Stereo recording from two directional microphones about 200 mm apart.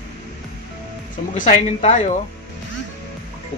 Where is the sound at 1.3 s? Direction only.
35° left (ahead or behind).